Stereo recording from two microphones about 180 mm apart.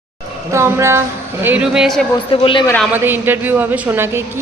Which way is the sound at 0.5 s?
15° right (ahead or behind).